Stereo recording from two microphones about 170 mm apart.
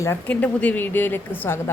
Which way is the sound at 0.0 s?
10° left (ahead or behind).